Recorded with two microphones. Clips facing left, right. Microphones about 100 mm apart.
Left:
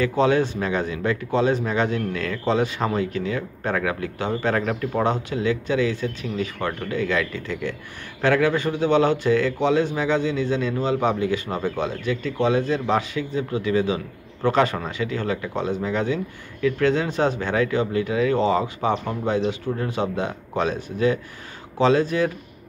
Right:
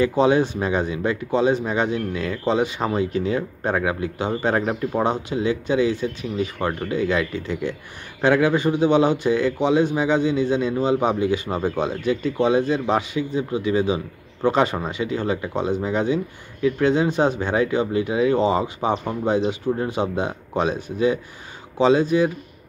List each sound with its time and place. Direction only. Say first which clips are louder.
0.0 s speech: right 2 dB; 20° right (ahead or behind)